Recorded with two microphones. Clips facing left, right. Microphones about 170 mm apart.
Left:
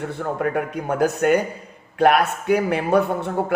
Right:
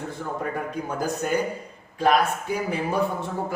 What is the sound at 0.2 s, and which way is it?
A man's voice, 70° left (ahead or behind).